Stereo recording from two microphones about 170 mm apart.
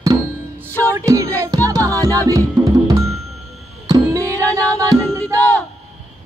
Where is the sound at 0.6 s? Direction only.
15° left (ahead or behind).